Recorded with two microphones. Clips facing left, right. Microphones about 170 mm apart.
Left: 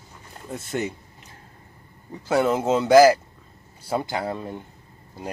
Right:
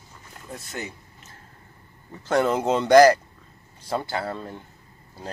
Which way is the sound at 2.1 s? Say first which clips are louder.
Left 1 dB; 10° left (ahead or behind).